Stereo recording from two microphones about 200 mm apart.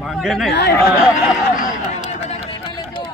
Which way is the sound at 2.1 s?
30° left (ahead or behind).